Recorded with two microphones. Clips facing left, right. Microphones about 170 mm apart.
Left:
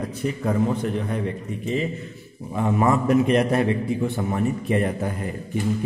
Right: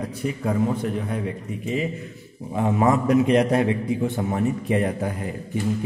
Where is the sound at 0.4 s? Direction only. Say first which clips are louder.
Even; 5° right (ahead or behind).